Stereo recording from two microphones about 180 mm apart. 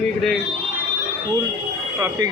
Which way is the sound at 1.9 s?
15° right (ahead or behind).